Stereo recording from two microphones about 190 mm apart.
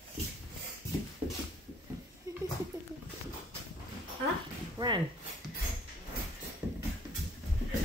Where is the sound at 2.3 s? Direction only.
15° right (ahead or behind).